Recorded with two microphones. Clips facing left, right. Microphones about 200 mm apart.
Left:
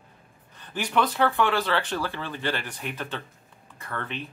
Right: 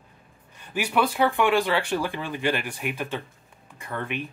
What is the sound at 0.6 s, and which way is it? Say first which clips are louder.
Speech: right 1 dB; 10° right (ahead or behind).